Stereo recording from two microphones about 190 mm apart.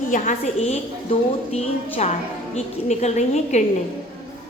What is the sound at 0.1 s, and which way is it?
Speech, 35° left (ahead or behind).